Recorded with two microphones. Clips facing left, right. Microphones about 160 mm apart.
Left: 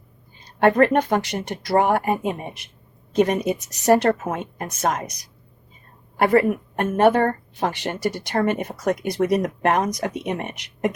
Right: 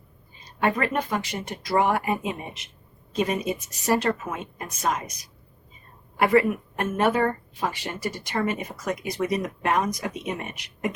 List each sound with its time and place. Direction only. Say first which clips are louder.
0.6 s speech: left 8 dB; 65° left (ahead or behind)
1.7 s speech: left 4 dB; 55° left (ahead or behind)
3.1 s speech: left 6 dB; 70° left (ahead or behind)
6.3 s speech: left 2 dB; 60° left (ahead or behind)